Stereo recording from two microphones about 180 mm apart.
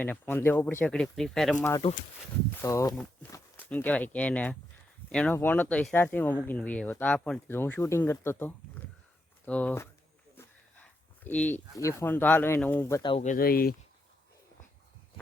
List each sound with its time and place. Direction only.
0.0 s speech: 10° left (ahead or behind)
2.6 s speech: 15° left (ahead or behind)
13.0 s speech: 30° left (ahead or behind)
13.2 s speech: 55° left (ahead or behind)